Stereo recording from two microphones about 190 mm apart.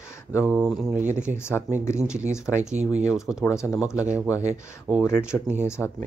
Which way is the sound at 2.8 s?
35° right (ahead or behind).